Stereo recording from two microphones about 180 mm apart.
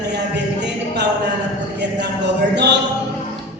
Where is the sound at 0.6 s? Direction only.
70° right (ahead or behind).